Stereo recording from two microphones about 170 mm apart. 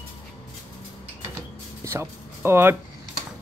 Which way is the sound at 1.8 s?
15° right (ahead or behind).